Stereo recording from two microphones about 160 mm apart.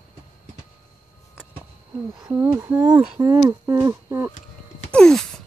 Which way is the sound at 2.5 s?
15° right (ahead or behind).